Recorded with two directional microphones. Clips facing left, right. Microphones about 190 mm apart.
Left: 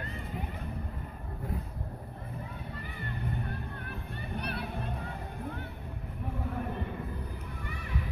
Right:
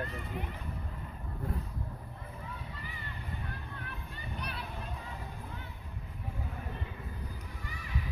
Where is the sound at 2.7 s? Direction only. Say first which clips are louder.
Left 5 dB; 55° left (ahead or behind).